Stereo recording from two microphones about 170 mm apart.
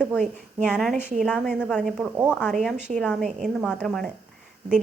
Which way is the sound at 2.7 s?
45° right (ahead or behind).